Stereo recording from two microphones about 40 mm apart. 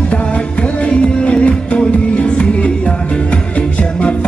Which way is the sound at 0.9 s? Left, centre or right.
Left.